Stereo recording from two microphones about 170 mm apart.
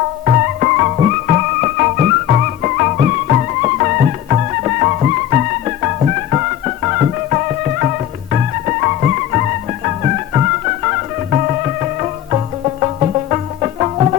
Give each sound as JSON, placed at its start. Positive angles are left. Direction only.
{"t": 0.3, "sound": "music", "side_deg": -35}
{"t": 1.6, "sound": "music", "side_deg": -50}
{"t": 2.2, "sound": "music", "side_deg": -35}